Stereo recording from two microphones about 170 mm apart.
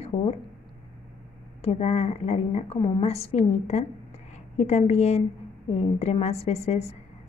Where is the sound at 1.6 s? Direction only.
40° left (ahead or behind).